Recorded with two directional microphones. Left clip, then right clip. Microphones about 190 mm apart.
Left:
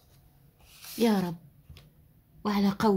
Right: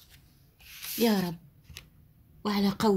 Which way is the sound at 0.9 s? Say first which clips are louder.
Even; 10° right (ahead or behind).